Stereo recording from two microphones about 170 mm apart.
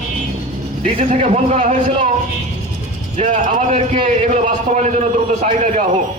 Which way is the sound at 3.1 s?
45° right (ahead or behind).